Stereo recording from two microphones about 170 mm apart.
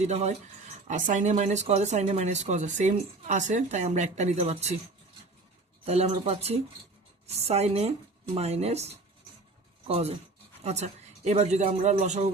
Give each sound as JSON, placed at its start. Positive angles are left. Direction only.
{"t": 0.0, "sound": "speech", "side_deg": -40}
{"t": 5.8, "sound": "a man's voice", "side_deg": -40}